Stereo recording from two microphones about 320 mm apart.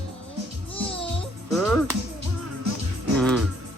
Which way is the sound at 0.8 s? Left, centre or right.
Centre.